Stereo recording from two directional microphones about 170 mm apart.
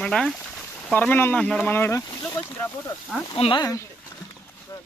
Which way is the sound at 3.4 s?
30° left (ahead or behind).